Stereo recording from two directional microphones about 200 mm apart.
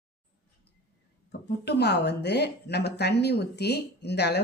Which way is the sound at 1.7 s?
55° left (ahead or behind).